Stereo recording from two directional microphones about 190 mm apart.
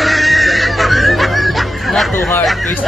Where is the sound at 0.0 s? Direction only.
Centre (ahead or behind).